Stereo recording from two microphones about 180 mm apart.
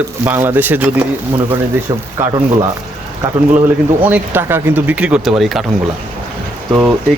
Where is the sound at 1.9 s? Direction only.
20° right (ahead or behind).